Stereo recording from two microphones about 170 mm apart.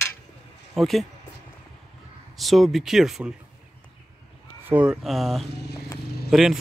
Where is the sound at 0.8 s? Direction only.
Centre (ahead or behind).